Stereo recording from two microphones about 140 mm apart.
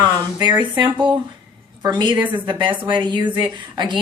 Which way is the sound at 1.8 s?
30° right (ahead or behind).